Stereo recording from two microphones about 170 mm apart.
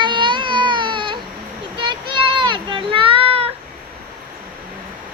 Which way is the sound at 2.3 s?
30° right (ahead or behind).